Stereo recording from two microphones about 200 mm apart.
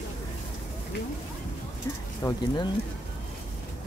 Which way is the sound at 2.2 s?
20° left (ahead or behind).